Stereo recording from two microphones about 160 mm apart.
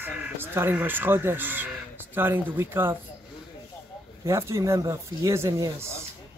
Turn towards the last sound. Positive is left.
turn(degrees=-20)  # may be behind; listen again after turning